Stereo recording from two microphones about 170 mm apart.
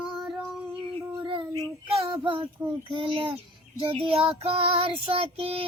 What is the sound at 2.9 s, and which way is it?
Child singing, 30° right (ahead or behind).